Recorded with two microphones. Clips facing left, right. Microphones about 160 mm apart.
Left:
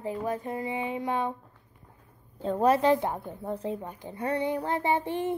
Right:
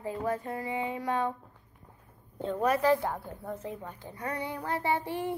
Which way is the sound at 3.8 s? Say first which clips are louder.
Left 5 dB; 20° left (ahead or behind).